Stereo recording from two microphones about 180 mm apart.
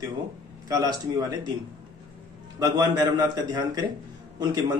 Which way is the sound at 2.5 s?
20° right (ahead or behind).